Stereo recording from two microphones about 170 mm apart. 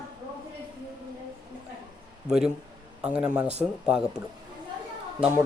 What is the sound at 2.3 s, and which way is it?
Speech, 5° right (ahead or behind).